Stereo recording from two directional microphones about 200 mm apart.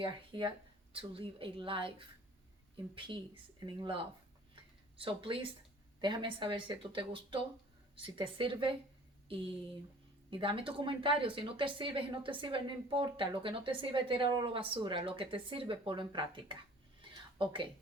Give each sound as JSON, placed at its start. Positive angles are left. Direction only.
{"t": 0.0, "sound": "speech", "side_deg": -25}
{"t": 3.6, "sound": "speech", "side_deg": -20}
{"t": 10.2, "sound": "speech", "side_deg": -25}
{"t": 17.0, "sound": "a sound", "side_deg": -25}